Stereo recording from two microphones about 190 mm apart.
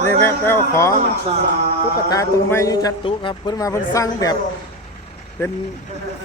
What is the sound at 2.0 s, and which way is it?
A man's voice, 15° left (ahead or behind).